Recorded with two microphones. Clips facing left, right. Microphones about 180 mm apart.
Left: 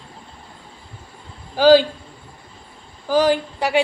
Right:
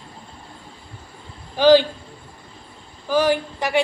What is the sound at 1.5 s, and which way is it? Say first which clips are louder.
Speech: left 1 dB; 10° left (ahead or behind).